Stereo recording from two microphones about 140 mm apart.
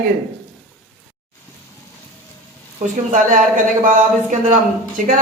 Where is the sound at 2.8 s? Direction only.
65° right (ahead or behind).